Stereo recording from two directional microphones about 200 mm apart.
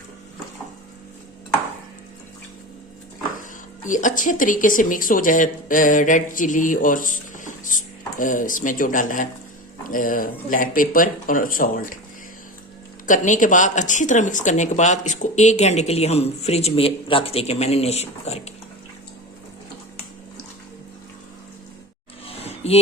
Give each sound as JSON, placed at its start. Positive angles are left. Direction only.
{"t": 3.8, "sound": "speech", "side_deg": 40}
{"t": 13.1, "sound": "speech", "side_deg": 40}
{"t": 22.3, "sound": "a sound", "side_deg": 30}